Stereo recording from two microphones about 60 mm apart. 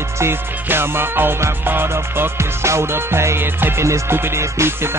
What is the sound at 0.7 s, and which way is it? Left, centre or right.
Music, right.